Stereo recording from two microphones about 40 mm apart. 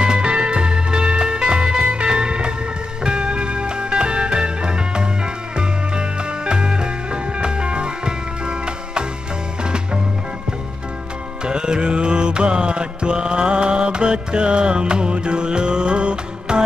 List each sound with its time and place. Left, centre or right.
0.0 s music: right
11.4 s music: right